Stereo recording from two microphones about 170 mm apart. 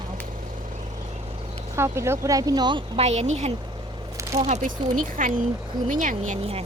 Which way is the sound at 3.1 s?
40° right (ahead or behind).